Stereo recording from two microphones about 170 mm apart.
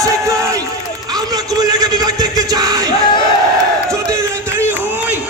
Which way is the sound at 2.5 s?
20° right (ahead or behind).